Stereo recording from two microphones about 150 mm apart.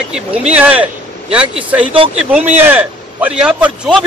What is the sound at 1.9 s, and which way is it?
Speech, 40° right (ahead or behind).